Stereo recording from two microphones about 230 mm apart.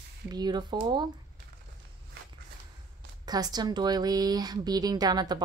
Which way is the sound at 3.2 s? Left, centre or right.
Centre.